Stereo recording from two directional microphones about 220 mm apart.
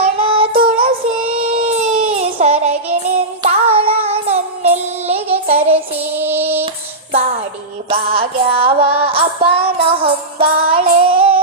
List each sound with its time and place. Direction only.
0.0 s child singing: 25° right (ahead or behind)
1.4 s music: 25° right (ahead or behind)
6.0 s child singing: 10° right (ahead or behind)
7.9 s music: 25° right (ahead or behind)